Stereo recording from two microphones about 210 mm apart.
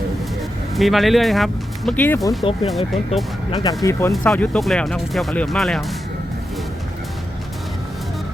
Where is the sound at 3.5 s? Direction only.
20° left (ahead or behind).